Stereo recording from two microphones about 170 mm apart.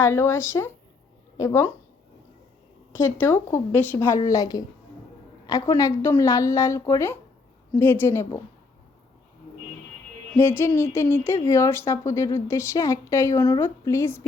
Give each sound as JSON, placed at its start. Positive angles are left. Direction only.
{"t": 0.0, "sound": "speech", "side_deg": 15}
{"t": 2.9, "sound": "speech", "side_deg": 15}
{"t": 10.3, "sound": "speech", "side_deg": 15}